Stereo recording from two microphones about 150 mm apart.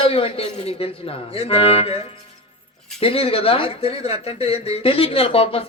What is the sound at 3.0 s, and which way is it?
Speech, 40° left (ahead or behind).